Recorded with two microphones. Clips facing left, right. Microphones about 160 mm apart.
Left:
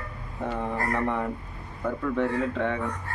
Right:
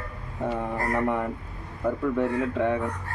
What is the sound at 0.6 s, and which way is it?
A man's voice, 10° right (ahead or behind).